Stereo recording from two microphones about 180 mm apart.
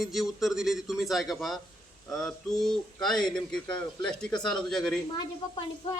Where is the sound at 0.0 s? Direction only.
Centre (ahead or behind).